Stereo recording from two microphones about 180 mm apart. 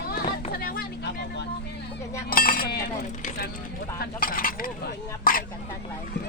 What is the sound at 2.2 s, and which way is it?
Chink, 55° left (ahead or behind).